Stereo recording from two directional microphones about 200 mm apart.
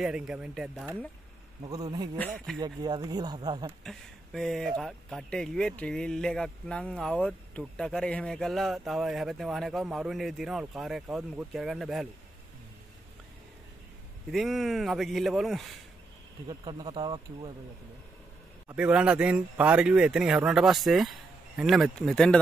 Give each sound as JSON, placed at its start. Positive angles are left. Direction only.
{"t": 0.0, "sound": "speech", "side_deg": -5}
{"t": 1.7, "sound": "speech", "side_deg": -20}
{"t": 2.3, "sound": "speech", "side_deg": 0}
{"t": 2.6, "sound": "speech", "side_deg": -20}
{"t": 3.8, "sound": "speech", "side_deg": 0}
{"t": 14.3, "sound": "speech", "side_deg": 0}
{"t": 16.4, "sound": "speech", "side_deg": -20}
{"t": 18.7, "sound": "speech", "side_deg": -5}